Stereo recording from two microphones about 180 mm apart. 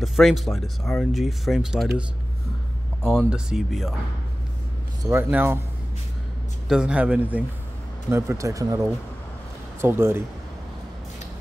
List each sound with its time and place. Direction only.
0.0 s speech: centre (ahead or behind)
3.3 s speech: 5° right (ahead or behind)
5.0 s speech: 10° right (ahead or behind)
6.7 s speech: 5° right (ahead or behind)